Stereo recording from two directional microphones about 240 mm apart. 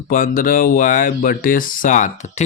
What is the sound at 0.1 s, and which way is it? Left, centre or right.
Speech, left.